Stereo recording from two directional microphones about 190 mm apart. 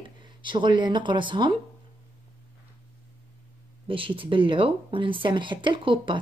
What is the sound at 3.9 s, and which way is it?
Speech, 30° right (ahead or behind).